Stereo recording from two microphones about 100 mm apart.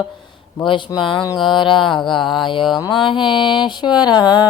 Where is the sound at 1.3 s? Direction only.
50° left (ahead or behind).